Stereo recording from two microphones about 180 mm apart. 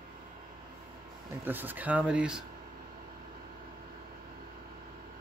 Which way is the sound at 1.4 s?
10° right (ahead or behind).